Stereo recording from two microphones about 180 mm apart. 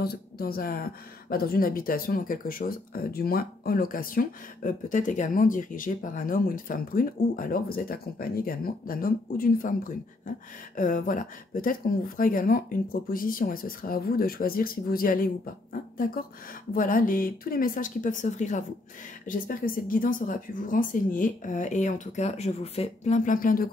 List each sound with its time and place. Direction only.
0.0 s speech: 60° left (ahead or behind)